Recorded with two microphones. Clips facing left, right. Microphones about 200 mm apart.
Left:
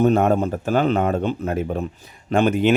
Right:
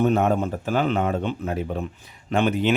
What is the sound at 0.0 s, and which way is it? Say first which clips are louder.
Speech: left 3 dB; 45° left (ahead or behind).